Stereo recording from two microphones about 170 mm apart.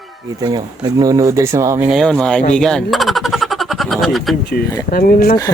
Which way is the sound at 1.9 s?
Centre (ahead or behind).